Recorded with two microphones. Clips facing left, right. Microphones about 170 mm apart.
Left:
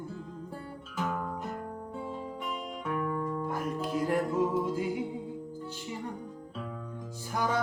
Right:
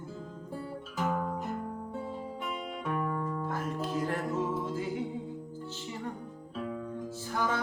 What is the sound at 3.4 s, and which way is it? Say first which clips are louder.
Music: left 1 dB; 15° left (ahead or behind).